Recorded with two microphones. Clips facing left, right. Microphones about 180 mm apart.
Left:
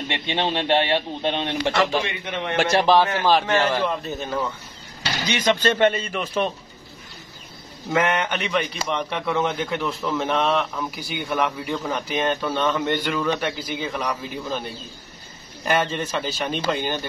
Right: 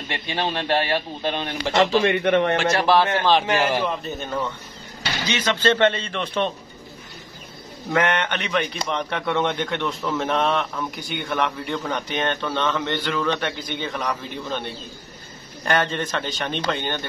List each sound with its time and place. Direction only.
0.1 s a man's voice: 25° left (ahead or behind)
2.0 s a man's voice: 60° right (ahead or behind)
2.7 s a man's voice: 15° left (ahead or behind)
3.4 s a man's voice: 15° right (ahead or behind)
3.8 s speech: centre (ahead or behind)
5.2 s a man's voice: 15° left (ahead or behind)
7.9 s a man's voice: 5° left (ahead or behind)
15.6 s a man's voice: 5° left (ahead or behind)